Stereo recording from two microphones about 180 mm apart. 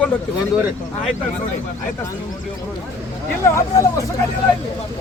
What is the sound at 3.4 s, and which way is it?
Speech, 15° left (ahead or behind).